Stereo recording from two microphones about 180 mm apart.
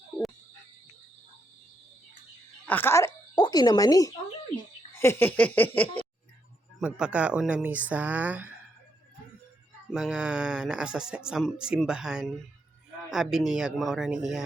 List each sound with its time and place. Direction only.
2.6 s speech: 10° left (ahead or behind)
4.9 s a sound: 15° left (ahead or behind)
6.7 s speech: 5° right (ahead or behind)
9.9 s speech: 5° right (ahead or behind)